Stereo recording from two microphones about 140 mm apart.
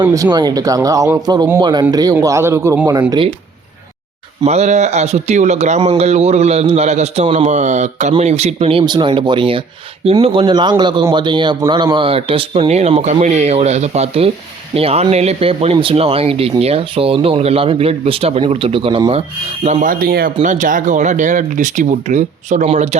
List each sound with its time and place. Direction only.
0.0 s speech: 25° right (ahead or behind)
4.4 s speech: 50° right (ahead or behind)
8.8 s speech: 30° right (ahead or behind)
19.6 s speech: 65° right (ahead or behind); by 20.3 s 90° right
20.4 s speech: 65° right (ahead or behind); by 23.0 s 50° right (ahead or behind)